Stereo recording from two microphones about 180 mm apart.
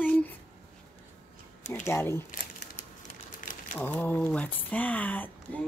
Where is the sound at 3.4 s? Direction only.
45° left (ahead or behind).